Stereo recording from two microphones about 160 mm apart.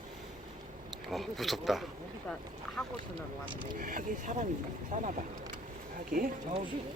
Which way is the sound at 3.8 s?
55° right (ahead or behind).